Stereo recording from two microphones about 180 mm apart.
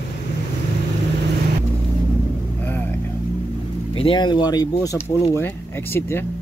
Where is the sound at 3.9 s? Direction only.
30° left (ahead or behind); by 6.2 s 15° left (ahead or behind).